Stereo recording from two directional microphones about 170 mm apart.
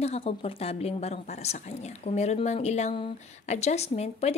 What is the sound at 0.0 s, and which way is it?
A woman's voice, 35° left (ahead or behind).